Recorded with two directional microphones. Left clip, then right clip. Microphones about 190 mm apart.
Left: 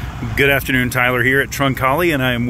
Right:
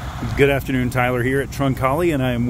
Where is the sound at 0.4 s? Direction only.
Centre (ahead or behind).